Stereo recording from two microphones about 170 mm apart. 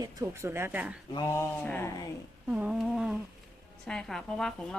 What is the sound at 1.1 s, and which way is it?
Speech, 20° left (ahead or behind).